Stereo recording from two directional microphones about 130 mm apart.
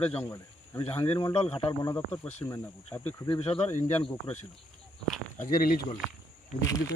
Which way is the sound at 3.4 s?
45° left (ahead or behind).